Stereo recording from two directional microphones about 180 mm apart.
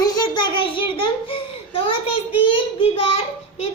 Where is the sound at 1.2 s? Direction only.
30° left (ahead or behind).